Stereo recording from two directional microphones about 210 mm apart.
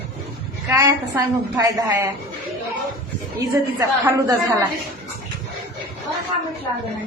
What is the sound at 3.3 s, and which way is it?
A woman's voice, 15° right (ahead or behind).